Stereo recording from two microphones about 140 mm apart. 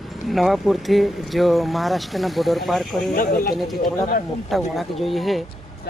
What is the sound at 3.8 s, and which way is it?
Speech, 70° left (ahead or behind).